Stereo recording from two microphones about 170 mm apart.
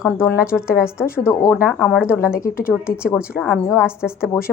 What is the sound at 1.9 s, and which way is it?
Speech, 5° right (ahead or behind).